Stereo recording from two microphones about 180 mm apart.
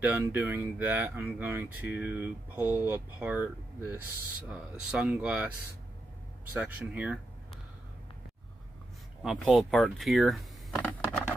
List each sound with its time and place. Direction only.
0.0 s speech: 10° right (ahead or behind)
6.5 s speech: 10° right (ahead or behind)
9.2 s speech: centre (ahead or behind)